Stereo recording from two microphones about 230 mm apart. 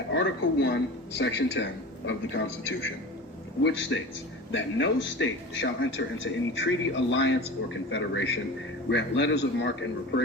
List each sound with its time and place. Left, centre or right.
0.1 s a man's voice: left